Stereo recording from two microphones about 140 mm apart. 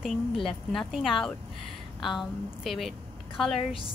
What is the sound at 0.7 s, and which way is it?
A woman's voice, centre (ahead or behind).